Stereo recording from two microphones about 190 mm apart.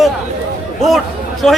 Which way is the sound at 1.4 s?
Centre (ahead or behind).